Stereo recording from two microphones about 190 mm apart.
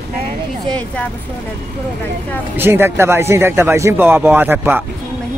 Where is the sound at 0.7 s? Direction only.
5° left (ahead or behind).